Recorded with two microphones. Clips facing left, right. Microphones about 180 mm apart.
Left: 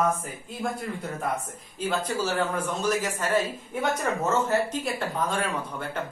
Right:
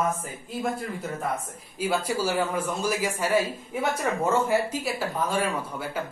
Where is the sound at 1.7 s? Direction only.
10° right (ahead or behind).